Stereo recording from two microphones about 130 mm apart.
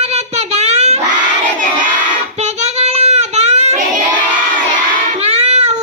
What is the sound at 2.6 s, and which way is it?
Child singing, 55° right (ahead or behind).